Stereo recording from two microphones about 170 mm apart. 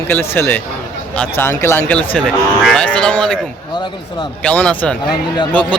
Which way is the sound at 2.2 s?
5° left (ahead or behind).